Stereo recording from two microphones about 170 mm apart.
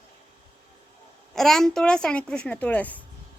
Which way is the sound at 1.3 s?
Centre (ahead or behind).